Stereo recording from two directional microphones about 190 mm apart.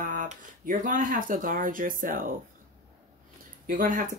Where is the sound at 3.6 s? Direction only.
45° right (ahead or behind).